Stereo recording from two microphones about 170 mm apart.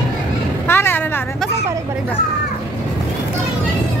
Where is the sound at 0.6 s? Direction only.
15° left (ahead or behind).